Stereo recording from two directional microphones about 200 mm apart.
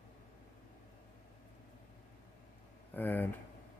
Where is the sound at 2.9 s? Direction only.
10° left (ahead or behind).